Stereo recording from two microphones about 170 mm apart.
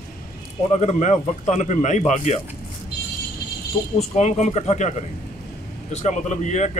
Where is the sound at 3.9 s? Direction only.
40° left (ahead or behind).